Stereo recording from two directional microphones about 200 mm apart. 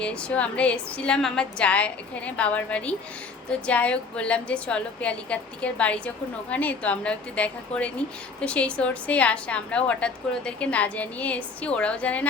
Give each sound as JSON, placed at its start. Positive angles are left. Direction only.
{"t": 0.0, "sound": "a woman's voice", "side_deg": 5}